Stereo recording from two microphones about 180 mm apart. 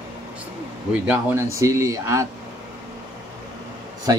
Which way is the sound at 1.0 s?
10° right (ahead or behind).